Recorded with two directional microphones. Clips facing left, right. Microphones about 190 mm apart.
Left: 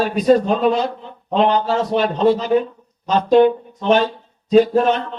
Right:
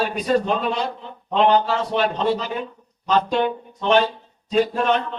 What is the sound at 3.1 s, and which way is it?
Speech, 40° left (ahead or behind).